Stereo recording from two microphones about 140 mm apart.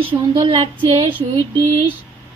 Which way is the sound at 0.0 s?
40° right (ahead or behind).